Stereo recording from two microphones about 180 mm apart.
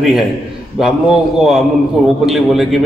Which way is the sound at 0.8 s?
Centre (ahead or behind).